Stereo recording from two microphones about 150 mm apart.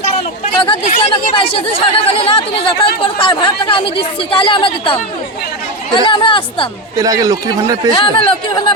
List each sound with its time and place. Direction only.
0.2 s chatter: 40° left (ahead or behind)
0.9 s speech: 40° left (ahead or behind)
6.1 s speech: 35° left (ahead or behind)
7.0 s speech: 20° right (ahead or behind)
7.9 s speech: 35° left (ahead or behind)